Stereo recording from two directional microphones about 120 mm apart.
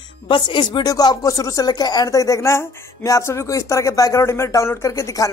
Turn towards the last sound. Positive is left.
turn(degrees=25)  # may be behind; listen again after turning